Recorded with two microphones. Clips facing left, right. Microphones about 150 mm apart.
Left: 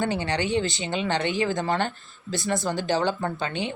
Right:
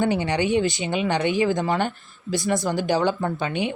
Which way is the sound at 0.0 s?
15° right (ahead or behind).